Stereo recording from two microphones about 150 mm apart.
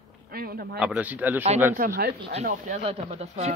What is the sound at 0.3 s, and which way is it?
Speech, 90° right.